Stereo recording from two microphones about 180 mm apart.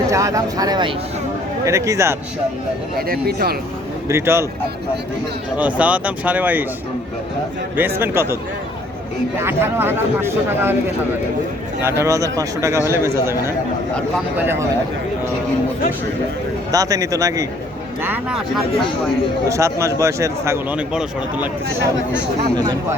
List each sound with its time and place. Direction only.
0.1 s speech: 20° right (ahead or behind)
3.1 s speech: 60° right (ahead or behind)
4.1 s speech: 15° right (ahead or behind)
5.5 s speech: 10° right (ahead or behind)
7.8 s speech: 10° right (ahead or behind)
9.4 s speech: 15° right (ahead or behind)
11.8 s speech: 15° right (ahead or behind)
16.7 s speech: 20° right (ahead or behind)
18.0 s speech: 10° right (ahead or behind)
19.5 s speech: 15° right (ahead or behind)